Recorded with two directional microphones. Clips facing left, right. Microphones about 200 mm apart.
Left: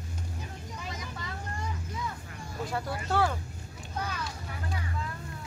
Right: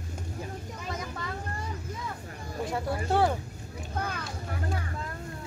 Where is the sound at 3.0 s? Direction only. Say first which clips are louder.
Right 3 dB; 25° right (ahead or behind).